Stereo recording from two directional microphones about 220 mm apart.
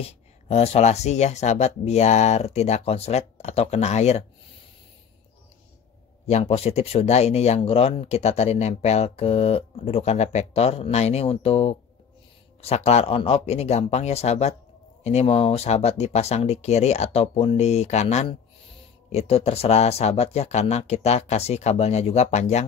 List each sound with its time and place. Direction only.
0.0 s speech: 30° left (ahead or behind)
6.2 s speech: 30° left (ahead or behind)